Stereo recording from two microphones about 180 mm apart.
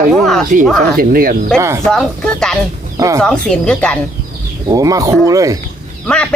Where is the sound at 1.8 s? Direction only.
5° left (ahead or behind).